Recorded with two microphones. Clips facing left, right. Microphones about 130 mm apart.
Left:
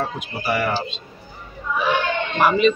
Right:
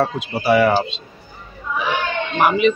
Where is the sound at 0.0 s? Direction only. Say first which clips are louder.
Right 6 dB; 80° right.